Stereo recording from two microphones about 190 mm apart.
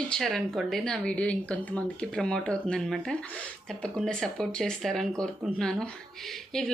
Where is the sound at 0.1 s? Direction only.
Centre (ahead or behind).